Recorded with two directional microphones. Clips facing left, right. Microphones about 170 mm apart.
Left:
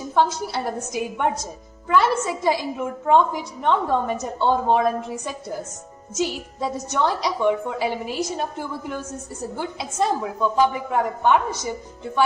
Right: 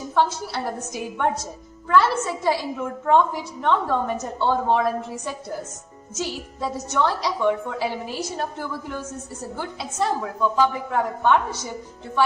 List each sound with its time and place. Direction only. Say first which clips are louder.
0.1 s a woman's voice: left 1 dB; 15° left (ahead or behind)